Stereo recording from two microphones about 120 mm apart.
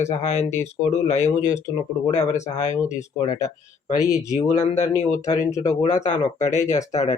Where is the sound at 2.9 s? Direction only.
80° left.